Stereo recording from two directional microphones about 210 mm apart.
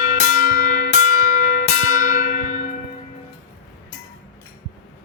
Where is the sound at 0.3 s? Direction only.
40° left (ahead or behind).